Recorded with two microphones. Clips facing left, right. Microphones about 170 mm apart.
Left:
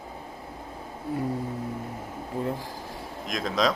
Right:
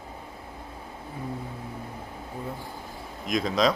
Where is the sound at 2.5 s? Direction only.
90° left.